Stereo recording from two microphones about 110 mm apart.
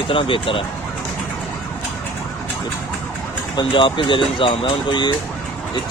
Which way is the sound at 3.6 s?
50° left (ahead or behind).